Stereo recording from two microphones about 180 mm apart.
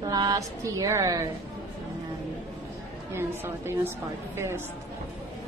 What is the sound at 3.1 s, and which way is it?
A woman's voice, 15° right (ahead or behind).